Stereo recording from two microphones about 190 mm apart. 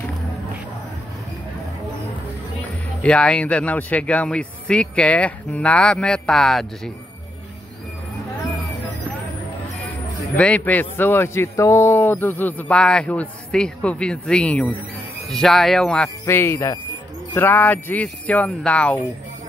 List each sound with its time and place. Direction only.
3.0 s speech: 5° left (ahead or behind)
10.3 s speech: 5° left (ahead or behind)